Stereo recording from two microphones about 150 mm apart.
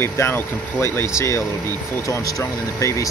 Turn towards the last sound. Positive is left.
turn(degrees=20)  # may be behind; listen again after turning